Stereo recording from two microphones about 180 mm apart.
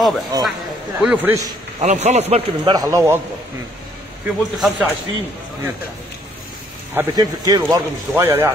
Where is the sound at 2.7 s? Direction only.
20° right (ahead or behind).